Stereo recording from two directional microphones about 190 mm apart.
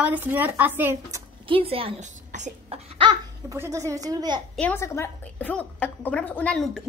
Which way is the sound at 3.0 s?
20° right (ahead or behind).